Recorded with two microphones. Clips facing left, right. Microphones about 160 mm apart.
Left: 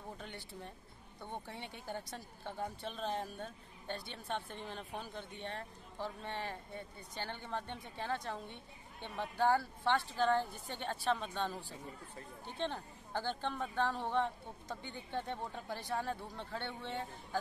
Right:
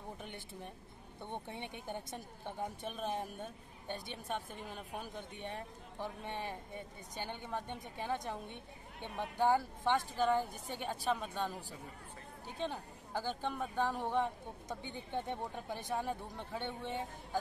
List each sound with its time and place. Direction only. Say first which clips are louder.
0.2 s speech: right 1 dB; 15° right (ahead or behind)